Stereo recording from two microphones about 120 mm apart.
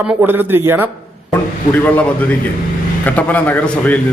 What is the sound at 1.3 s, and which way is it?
Speech, 15° left (ahead or behind).